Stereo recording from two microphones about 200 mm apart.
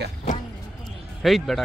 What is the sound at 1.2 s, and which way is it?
Speech, centre (ahead or behind).